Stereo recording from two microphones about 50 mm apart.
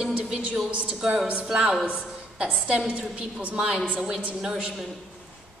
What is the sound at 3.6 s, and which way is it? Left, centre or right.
A woman's voice, centre.